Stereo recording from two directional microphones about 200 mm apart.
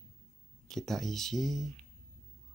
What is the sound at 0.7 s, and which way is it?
Speech, centre (ahead or behind).